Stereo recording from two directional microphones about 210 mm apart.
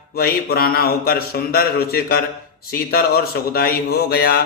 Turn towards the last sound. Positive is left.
turn(degrees=50)  # may be behind; listen again after turning